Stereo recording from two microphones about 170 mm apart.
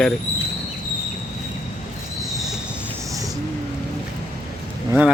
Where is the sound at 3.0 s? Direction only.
20° right (ahead or behind).